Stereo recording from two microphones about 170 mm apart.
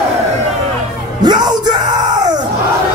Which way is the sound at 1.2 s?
25° right (ahead or behind).